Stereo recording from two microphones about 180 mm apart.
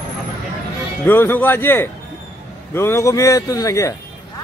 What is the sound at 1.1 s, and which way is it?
A man's voice, 10° left (ahead or behind).